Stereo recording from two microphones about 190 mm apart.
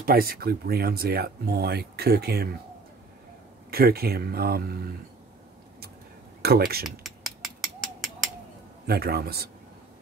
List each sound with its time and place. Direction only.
0.0 s speech: 50° right (ahead or behind)
3.7 s speech: 55° right (ahead or behind)
6.4 s speech: 55° right (ahead or behind)
7.0 s a sound: centre (ahead or behind)
8.8 s speech: 55° right (ahead or behind)